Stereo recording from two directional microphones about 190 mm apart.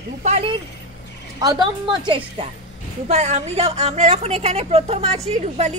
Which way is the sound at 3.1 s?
35° right (ahead or behind).